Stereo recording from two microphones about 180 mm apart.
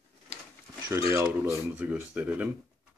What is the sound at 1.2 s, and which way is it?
Speech, 10° right (ahead or behind).